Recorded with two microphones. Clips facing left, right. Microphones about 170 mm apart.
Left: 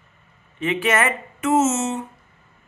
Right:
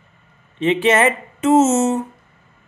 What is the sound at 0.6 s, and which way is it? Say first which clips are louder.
Speech: right 6 dB; 25° right (ahead or behind).